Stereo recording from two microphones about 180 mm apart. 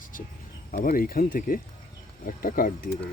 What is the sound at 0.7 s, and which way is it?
Speech, 50° left (ahead or behind).